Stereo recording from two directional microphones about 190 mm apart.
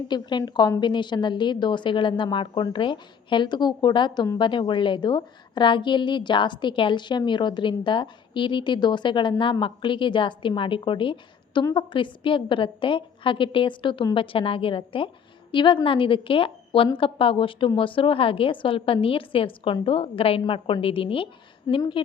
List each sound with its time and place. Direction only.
0.1 s a woman's voice: 25° left (ahead or behind)